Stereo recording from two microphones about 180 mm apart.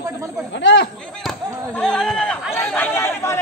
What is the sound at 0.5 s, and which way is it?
Speech, 75° left (ahead or behind).